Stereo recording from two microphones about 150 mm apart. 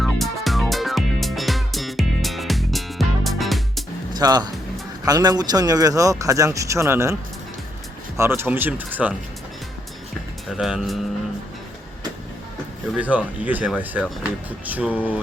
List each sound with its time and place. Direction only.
0.0 s music: centre (ahead or behind)
4.2 s speech: 30° right (ahead or behind); by 9.1 s 10° right (ahead or behind)
10.6 s speech: centre (ahead or behind)
13.0 s speech: 10° right (ahead or behind)